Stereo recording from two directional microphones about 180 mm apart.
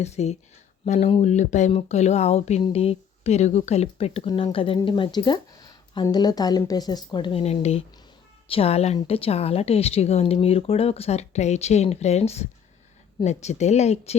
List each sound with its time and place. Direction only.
0.0 s speech: 35° left (ahead or behind)